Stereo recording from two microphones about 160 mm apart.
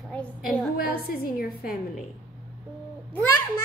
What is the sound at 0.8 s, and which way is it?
Speech, 70° left (ahead or behind).